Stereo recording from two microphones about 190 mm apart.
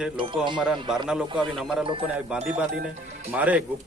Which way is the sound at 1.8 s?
25° right (ahead or behind).